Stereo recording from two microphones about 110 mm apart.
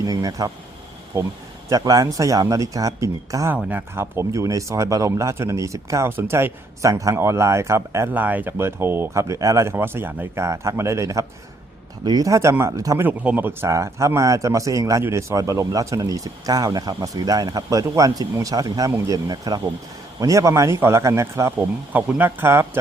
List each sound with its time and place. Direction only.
0.0 s speech: 35° right (ahead or behind)
3.5 s speech: 15° right (ahead or behind)
8.1 s speech: 15° right (ahead or behind); by 13.0 s 30° right (ahead or behind)
13.0 s speech: 15° right (ahead or behind)